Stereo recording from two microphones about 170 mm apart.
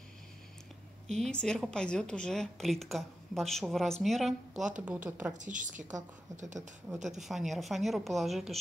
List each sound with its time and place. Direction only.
1.1 s a woman's voice: 5° left (ahead or behind)
5.4 s a woman's voice: 50° right (ahead or behind)
7.1 s a woman's voice: centre (ahead or behind)